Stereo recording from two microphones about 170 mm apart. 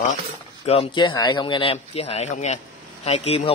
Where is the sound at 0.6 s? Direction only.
30° left (ahead or behind).